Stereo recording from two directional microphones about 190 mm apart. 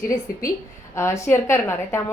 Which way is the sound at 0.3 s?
50° left (ahead or behind).